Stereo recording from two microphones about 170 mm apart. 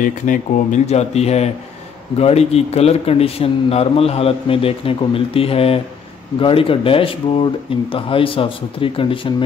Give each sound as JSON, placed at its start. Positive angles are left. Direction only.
{"t": 0.0, "sound": "speech", "side_deg": 50}